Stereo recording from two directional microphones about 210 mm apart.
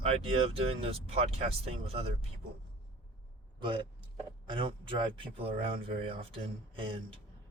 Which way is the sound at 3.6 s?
25° right (ahead or behind).